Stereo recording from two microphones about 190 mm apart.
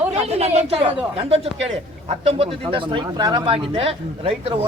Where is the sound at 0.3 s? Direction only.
35° right (ahead or behind).